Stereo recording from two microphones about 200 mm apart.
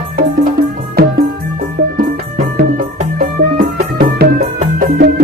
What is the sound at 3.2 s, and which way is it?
Music, 45° right (ahead or behind).